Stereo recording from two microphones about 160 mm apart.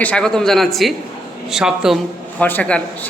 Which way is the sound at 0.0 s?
5° left (ahead or behind).